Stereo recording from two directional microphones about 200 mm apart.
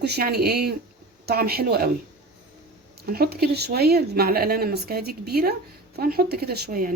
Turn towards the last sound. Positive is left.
turn(degrees=-50)  # may be behind; listen again after turning